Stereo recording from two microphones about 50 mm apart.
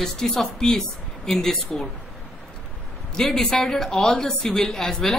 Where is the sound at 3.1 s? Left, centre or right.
Centre.